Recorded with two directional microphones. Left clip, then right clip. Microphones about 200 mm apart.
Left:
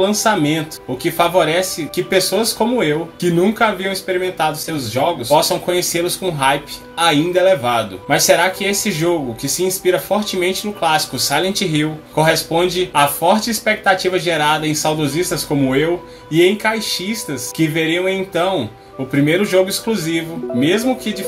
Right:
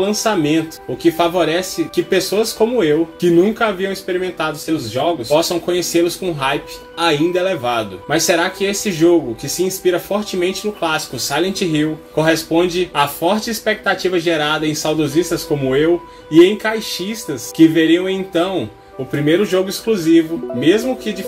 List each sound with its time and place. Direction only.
0.0 s speech: 20° right (ahead or behind)
10.4 s speech: 20° right (ahead or behind)
19.4 s speech: 20° right (ahead or behind)